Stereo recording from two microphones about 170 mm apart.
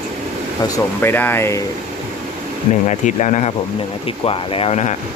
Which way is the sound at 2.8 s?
45° left (ahead or behind).